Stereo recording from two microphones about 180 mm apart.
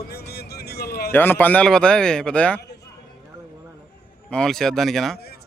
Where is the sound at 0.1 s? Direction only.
65° left (ahead or behind).